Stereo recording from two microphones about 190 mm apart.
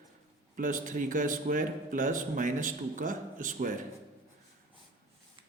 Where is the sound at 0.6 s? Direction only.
45° right (ahead or behind).